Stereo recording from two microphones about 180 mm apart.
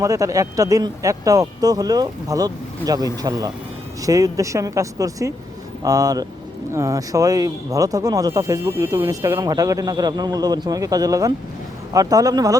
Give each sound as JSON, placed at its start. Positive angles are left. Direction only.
{"t": 0.0, "sound": "speech", "side_deg": -15}